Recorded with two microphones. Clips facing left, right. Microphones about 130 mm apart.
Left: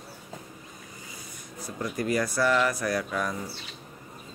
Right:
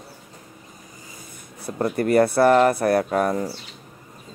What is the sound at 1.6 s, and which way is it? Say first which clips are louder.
Speech: right 8 dB; 60° right (ahead or behind).